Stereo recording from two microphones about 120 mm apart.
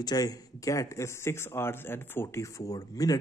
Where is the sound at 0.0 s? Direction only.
30° left (ahead or behind).